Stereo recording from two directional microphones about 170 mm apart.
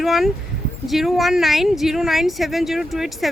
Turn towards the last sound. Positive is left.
turn(degrees=0)  # may be behind; listen again after turning